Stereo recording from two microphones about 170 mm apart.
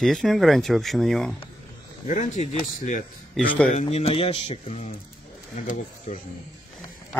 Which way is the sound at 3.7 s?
40° left (ahead or behind).